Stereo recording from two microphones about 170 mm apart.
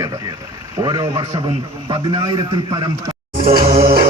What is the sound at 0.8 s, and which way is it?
Speech, 25° right (ahead or behind).